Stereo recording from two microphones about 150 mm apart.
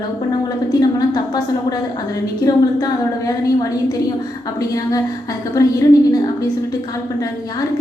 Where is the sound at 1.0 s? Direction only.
25° left (ahead or behind).